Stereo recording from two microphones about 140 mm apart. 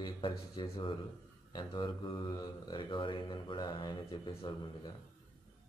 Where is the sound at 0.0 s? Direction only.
35° left (ahead or behind).